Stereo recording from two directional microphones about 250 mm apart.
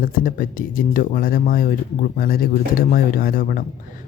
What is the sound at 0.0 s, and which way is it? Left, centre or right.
Speech, left.